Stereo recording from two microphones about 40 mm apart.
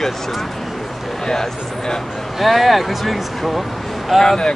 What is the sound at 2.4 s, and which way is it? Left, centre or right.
Speech, centre.